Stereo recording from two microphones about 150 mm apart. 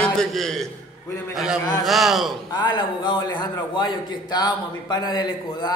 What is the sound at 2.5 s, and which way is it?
A man's voice, 30° left (ahead or behind).